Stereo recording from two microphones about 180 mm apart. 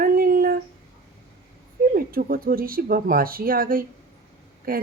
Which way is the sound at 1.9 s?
55° right (ahead or behind).